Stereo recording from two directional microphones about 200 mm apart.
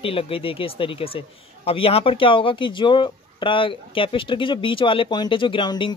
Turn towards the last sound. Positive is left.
turn(degrees=20)  # may be behind; listen again after turning